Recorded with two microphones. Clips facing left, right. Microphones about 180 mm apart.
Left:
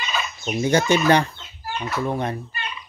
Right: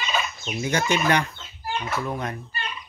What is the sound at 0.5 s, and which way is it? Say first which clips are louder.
Speech: left 6 dB; 30° left (ahead or behind).